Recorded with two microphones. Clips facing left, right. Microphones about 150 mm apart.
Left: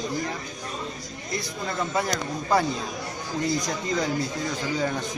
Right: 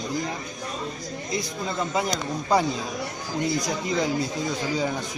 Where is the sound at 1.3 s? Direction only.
15° right (ahead or behind).